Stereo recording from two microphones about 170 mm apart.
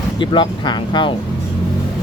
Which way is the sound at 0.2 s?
25° left (ahead or behind).